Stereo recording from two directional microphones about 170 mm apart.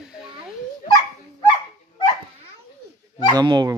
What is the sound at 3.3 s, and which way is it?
Speech, 25° right (ahead or behind).